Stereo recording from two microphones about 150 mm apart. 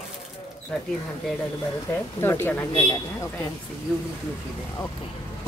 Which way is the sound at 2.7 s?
30° left (ahead or behind).